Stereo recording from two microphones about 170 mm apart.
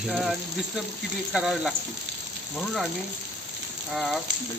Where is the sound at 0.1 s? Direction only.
Centre (ahead or behind).